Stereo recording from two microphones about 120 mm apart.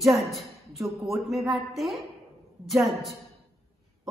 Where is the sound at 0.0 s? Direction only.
Centre (ahead or behind).